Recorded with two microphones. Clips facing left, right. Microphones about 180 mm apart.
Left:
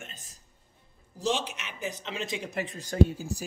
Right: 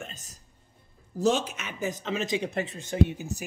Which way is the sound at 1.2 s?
45° right (ahead or behind).